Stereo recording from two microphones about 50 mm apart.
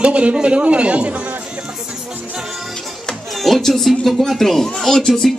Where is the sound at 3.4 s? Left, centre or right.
Centre.